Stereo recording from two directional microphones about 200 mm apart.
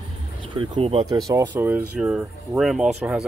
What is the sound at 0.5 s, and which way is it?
Speech, 30° right (ahead or behind).